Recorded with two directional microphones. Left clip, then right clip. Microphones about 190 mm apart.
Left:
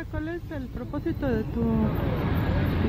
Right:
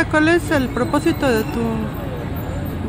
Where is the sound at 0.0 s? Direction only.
5° right (ahead or behind).